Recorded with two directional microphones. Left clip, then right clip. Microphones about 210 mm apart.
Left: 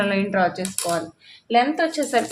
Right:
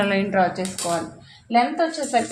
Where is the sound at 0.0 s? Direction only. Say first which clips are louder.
Right 1 dB; 5° left (ahead or behind).